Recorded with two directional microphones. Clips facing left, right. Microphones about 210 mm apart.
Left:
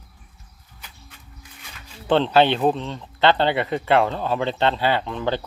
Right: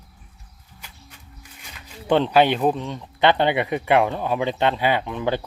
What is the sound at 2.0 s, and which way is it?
Speech, 10° right (ahead or behind).